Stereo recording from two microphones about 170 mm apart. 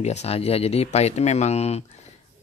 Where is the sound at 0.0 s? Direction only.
40° left (ahead or behind).